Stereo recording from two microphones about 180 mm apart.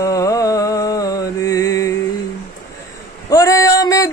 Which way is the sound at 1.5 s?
20° left (ahead or behind).